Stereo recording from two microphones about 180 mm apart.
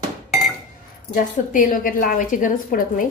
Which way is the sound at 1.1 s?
50° left (ahead or behind).